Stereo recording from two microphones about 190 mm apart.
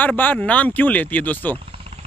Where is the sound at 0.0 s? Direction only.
10° left (ahead or behind).